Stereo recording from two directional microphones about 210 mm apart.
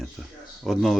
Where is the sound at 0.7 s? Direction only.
Centre (ahead or behind).